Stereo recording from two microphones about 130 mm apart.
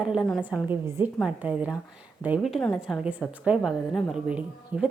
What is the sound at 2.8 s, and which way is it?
A woman's voice, 10° right (ahead or behind).